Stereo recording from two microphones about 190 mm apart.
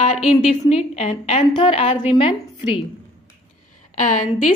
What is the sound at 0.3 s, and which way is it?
A woman's voice, 35° left (ahead or behind).